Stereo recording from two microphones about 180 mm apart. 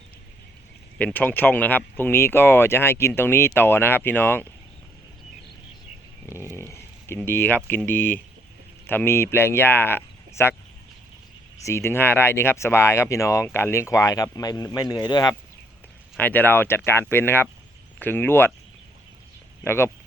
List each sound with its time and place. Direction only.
0.9 s speech: 10° left (ahead or behind)
6.3 s speech: 15° left (ahead or behind)
11.6 s speech: 15° left (ahead or behind)
16.1 s speech: 10° left (ahead or behind)
19.6 s speech: 15° left (ahead or behind)